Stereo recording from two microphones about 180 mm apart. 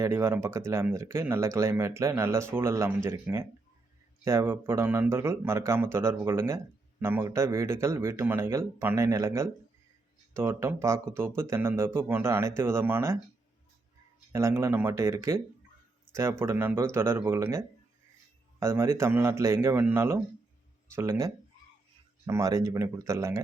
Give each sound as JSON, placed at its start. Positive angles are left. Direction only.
{"t": 0.0, "sound": "speech", "side_deg": -15}
{"t": 14.3, "sound": "speech", "side_deg": -15}
{"t": 18.6, "sound": "speech", "side_deg": -15}